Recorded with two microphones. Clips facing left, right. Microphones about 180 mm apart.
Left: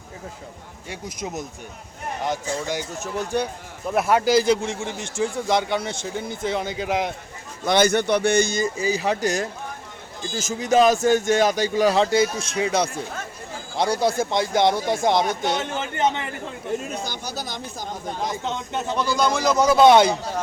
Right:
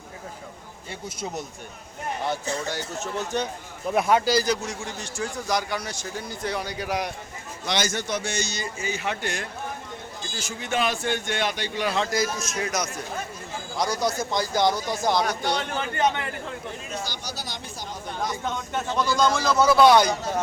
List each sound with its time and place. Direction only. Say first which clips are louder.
2.2 s speech: left 3 dB; 15° left (ahead or behind)
4.3 s a man's voice: left 5 dB; 25° left (ahead or behind)
7.6 s a man's voice: left 9 dB; 55° left (ahead or behind); by 16.3 s 20° left (ahead or behind)
17.0 s a man's voice: left 4 dB; 50° left (ahead or behind)
18.2 s a man's voice: even; 20° left (ahead or behind)